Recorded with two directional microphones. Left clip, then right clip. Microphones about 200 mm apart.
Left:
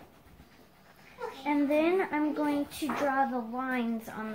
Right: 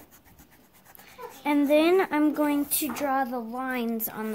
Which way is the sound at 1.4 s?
55° right (ahead or behind).